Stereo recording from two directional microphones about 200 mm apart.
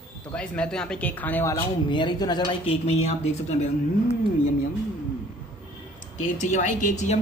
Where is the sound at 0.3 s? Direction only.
5° left (ahead or behind); by 3.5 s 30° left (ahead or behind).